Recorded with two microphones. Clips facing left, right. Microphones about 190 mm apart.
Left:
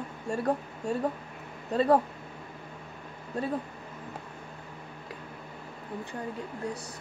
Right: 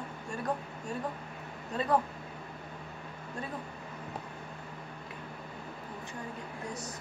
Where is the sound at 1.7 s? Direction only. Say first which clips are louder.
Left 6 dB; 30° left (ahead or behind).